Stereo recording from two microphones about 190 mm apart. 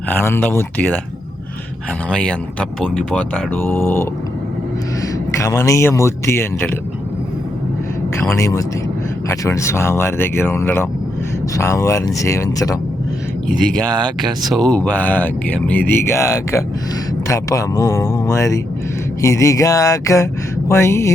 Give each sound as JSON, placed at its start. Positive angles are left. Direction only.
{"t": 0.1, "sound": "speech", "side_deg": 10}
{"t": 2.0, "sound": "speech", "side_deg": 5}
{"t": 5.4, "sound": "speech", "side_deg": 15}
{"t": 8.2, "sound": "speech", "side_deg": 15}
{"t": 13.6, "sound": "speech", "side_deg": 5}